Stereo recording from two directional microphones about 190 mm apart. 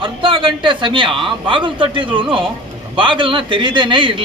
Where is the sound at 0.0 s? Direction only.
25° right (ahead or behind).